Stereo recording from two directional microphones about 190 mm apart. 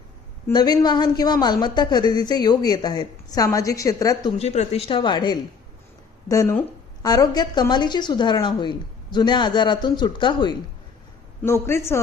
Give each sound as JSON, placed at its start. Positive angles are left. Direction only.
{"t": 0.4, "sound": "speech", "side_deg": 20}
{"t": 4.4, "sound": "a man's voice", "side_deg": 35}
{"t": 11.4, "sound": "a man's voice", "side_deg": 15}